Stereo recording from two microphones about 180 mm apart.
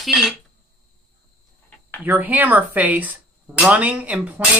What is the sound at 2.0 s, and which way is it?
Speech, 10° right (ahead or behind).